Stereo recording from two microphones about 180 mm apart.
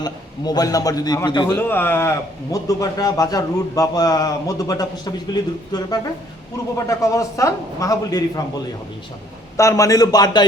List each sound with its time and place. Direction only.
0.0 s a man's voice: 20° left (ahead or behind)
1.5 s a man's voice: 10° left (ahead or behind)
9.6 s a man's voice: 15° left (ahead or behind)